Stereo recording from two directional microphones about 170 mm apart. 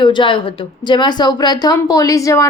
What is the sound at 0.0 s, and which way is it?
A woman's voice, 30° left (ahead or behind).